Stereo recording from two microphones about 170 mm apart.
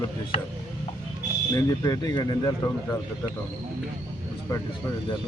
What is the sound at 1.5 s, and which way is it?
Speech, 20° left (ahead or behind).